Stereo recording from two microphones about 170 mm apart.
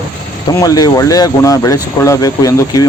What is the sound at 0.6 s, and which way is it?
Speech, 20° left (ahead or behind).